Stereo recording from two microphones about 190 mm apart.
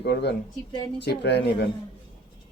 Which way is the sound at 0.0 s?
60° left (ahead or behind).